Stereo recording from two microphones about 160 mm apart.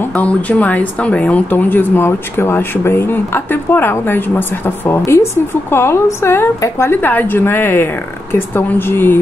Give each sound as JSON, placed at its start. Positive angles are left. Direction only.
{"t": 0.1, "sound": "speech", "side_deg": 10}